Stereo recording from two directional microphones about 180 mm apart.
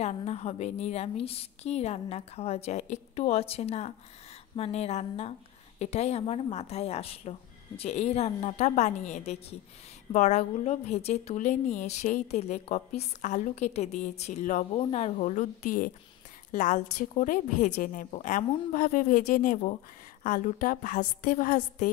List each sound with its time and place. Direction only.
0.0 s a woman's voice: 35° left (ahead or behind)